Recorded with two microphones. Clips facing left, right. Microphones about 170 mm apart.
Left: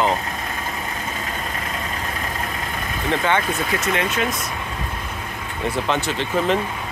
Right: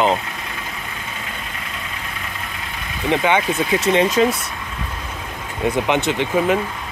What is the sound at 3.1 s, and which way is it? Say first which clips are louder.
Speech: right 3 dB; 15° right (ahead or behind).